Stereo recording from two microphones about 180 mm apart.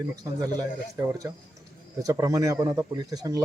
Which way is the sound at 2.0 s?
20° right (ahead or behind).